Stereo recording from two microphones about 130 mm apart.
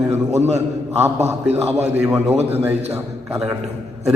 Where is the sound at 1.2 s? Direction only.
55° right (ahead or behind).